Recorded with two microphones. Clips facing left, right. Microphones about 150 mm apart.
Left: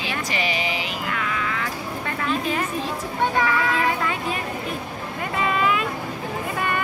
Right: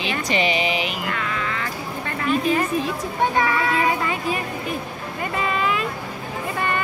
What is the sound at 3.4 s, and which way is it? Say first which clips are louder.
Child singing: right 1 dB; 5° right (ahead or behind).